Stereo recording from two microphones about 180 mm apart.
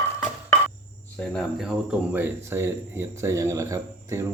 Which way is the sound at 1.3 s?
Centre (ahead or behind).